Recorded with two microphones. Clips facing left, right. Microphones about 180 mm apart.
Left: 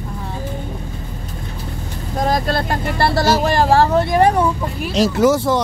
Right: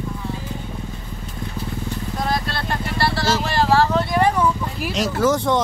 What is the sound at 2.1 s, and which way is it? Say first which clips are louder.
Speech: left 7 dB; 45° left (ahead or behind).